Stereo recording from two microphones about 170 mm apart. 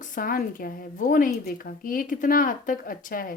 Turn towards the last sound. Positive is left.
turn(degrees=55)  # may be behind; listen again after turning